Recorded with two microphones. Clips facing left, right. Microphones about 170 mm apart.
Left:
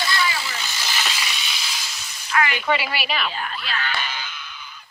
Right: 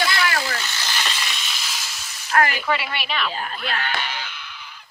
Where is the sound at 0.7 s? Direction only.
10° left (ahead or behind).